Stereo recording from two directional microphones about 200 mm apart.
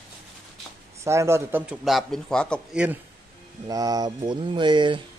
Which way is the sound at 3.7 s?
20° right (ahead or behind).